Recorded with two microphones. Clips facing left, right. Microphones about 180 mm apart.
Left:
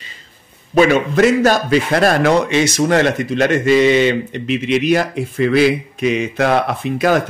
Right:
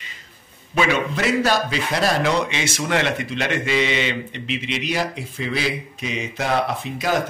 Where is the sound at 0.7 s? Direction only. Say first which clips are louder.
Left 9 dB; 45° left (ahead or behind).